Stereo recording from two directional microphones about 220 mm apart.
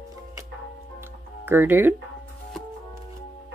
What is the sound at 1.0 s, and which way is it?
Music, 10° right (ahead or behind).